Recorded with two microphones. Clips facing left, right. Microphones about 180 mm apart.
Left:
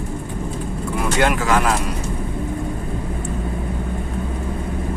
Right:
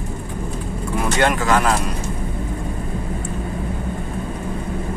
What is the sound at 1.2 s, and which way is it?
Speech, 5° left (ahead or behind).